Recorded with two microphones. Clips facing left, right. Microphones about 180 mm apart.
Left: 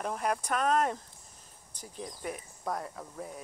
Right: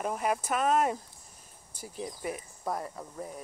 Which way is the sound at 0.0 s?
5° right (ahead or behind).